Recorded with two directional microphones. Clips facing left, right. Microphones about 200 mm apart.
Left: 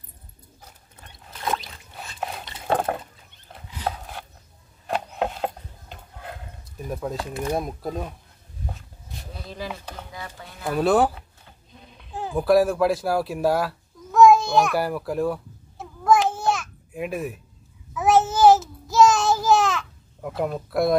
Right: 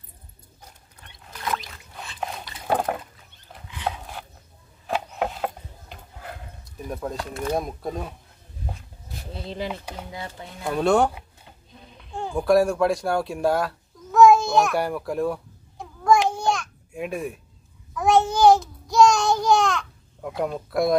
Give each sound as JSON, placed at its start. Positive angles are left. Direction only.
{"t": 2.5, "sound": "liquid", "side_deg": 20}
{"t": 4.8, "sound": "a sound", "side_deg": 0}
{"t": 6.6, "sound": "speech", "side_deg": 0}
{"t": 9.3, "sound": "speech", "side_deg": -25}
{"t": 10.6, "sound": "speech", "side_deg": 5}
{"t": 12.0, "sound": "a sound", "side_deg": 5}
{"t": 17.9, "sound": "babbling", "side_deg": 5}